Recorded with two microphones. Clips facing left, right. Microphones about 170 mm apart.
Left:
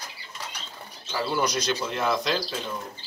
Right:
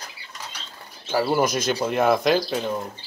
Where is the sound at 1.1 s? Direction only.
55° right (ahead or behind).